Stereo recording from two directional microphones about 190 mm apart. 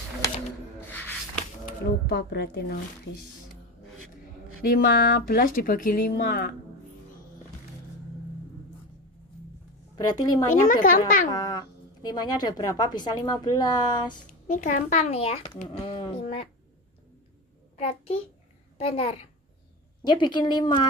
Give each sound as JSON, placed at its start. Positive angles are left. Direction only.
{"t": 0.8, "sound": "rub", "side_deg": 10}
{"t": 2.0, "sound": "a woman's voice", "side_deg": 60}
{"t": 4.6, "sound": "speech", "side_deg": 50}
{"t": 9.9, "sound": "speech", "side_deg": 20}
{"t": 10.5, "sound": "speech", "side_deg": 45}
{"t": 11.3, "sound": "speech", "side_deg": 20}
{"t": 14.2, "sound": "speech", "side_deg": 40}
{"t": 17.7, "sound": "a child's voice", "side_deg": 30}